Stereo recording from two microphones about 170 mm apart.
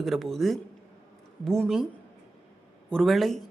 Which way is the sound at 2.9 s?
Centre (ahead or behind).